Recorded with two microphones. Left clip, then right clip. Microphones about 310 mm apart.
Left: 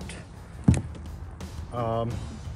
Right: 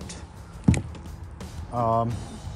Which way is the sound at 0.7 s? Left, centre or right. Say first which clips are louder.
Right 1 dB; centre.